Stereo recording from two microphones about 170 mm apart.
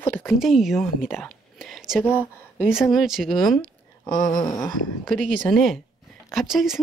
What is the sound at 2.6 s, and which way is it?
Speech, centre (ahead or behind).